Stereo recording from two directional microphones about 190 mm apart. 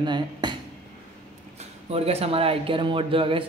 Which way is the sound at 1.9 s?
30° right (ahead or behind).